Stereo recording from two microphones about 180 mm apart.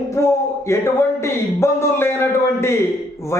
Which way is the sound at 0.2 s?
15° left (ahead or behind).